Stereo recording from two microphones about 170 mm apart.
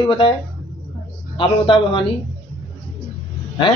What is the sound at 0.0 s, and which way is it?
Speech, 30° left (ahead or behind).